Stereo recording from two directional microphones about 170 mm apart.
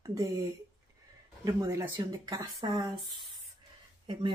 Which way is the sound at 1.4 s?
20° right (ahead or behind).